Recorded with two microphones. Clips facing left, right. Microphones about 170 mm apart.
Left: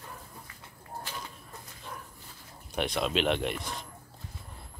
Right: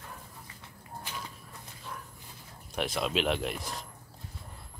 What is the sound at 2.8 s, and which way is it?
Speech, centre (ahead or behind).